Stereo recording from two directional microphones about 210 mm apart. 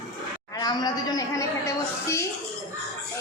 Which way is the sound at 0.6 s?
20° left (ahead or behind).